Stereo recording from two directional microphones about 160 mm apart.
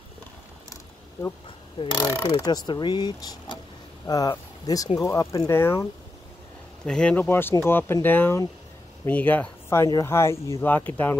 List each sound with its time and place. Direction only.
1.8 s speech: 25° left (ahead or behind)
6.9 s speech: 5° left (ahead or behind)